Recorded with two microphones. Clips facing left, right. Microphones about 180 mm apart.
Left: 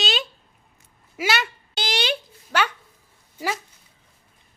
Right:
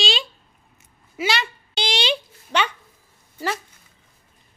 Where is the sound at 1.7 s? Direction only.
50° left (ahead or behind).